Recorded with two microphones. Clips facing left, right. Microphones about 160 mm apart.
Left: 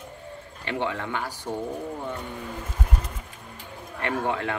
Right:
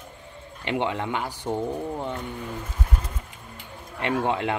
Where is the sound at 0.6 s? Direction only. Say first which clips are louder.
Right 3 dB; 20° right (ahead or behind).